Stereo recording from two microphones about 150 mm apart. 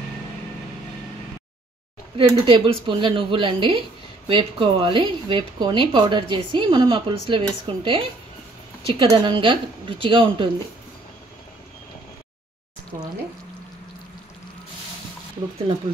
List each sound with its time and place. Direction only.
2.1 s speech: 35° right (ahead or behind)